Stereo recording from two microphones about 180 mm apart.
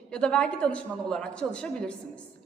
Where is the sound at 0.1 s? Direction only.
5° left (ahead or behind).